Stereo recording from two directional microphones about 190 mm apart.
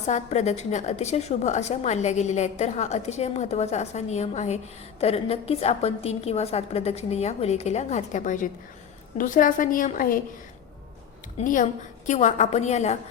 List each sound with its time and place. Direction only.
0.1 s a woman's voice: 35° left (ahead or behind)
11.3 s a woman's voice: 40° left (ahead or behind)